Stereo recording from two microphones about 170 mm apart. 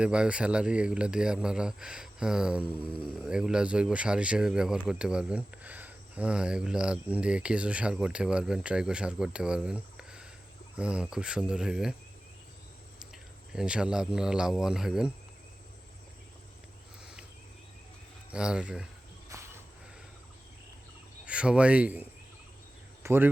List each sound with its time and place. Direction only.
0.0 s speech: 5° right (ahead or behind)
13.5 s speech: 5° right (ahead or behind)
18.3 s speech: 5° right (ahead or behind)
19.3 s a sound: 20° right (ahead or behind)
21.2 s speech: 5° right (ahead or behind)
23.0 s speech: 15° right (ahead or behind)